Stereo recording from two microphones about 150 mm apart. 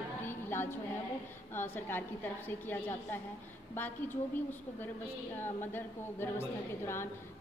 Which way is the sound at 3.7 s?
15° left (ahead or behind).